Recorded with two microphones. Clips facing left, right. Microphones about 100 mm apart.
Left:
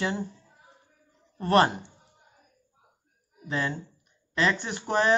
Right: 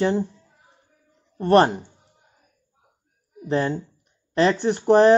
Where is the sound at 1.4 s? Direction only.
35° right (ahead or behind).